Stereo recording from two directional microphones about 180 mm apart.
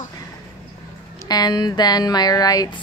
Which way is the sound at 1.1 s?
20° left (ahead or behind).